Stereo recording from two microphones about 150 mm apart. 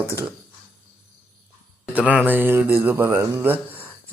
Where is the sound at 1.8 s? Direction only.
10° right (ahead or behind).